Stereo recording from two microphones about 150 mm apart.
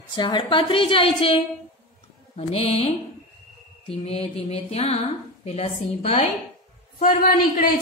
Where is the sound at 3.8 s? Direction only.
40° left (ahead or behind).